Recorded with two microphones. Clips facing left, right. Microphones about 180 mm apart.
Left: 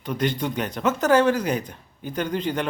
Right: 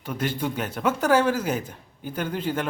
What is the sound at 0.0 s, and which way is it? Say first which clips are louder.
Speech: left 2 dB; 5° right (ahead or behind).